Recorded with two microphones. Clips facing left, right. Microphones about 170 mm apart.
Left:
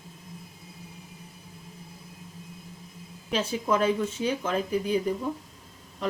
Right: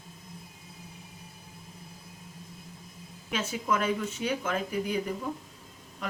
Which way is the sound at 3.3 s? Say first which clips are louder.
Left 4 dB; 30° left (ahead or behind).